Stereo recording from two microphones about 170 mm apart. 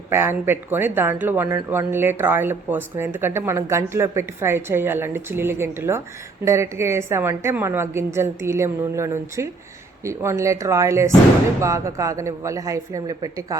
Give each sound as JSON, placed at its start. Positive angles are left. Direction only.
{"t": 0.1, "sound": "a woman's voice", "side_deg": -15}